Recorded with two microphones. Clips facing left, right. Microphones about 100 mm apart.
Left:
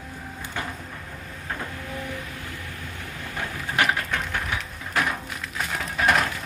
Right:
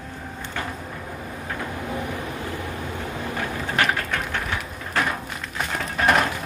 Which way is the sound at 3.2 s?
20° right (ahead or behind).